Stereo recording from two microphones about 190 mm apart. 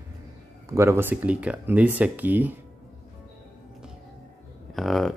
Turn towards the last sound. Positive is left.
turn(degrees=0)  # may be behind; listen again after turning